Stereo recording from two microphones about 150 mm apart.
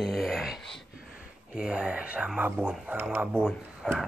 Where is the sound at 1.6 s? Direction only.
5° right (ahead or behind).